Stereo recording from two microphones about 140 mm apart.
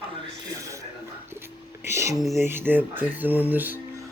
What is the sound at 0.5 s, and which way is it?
Television, 25° right (ahead or behind).